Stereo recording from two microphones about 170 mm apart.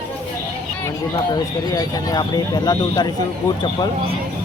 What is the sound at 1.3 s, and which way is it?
Speech, 20° left (ahead or behind).